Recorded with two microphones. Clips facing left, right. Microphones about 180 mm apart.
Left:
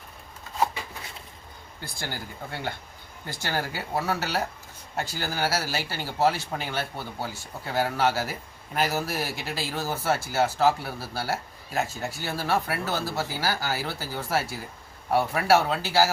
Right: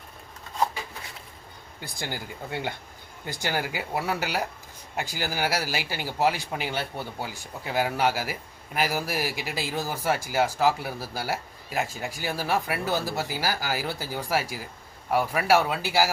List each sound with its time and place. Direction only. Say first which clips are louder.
1.8 s speech: right 1 dB; 15° right (ahead or behind)